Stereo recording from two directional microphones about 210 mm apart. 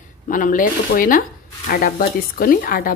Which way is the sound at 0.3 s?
40° left (ahead or behind).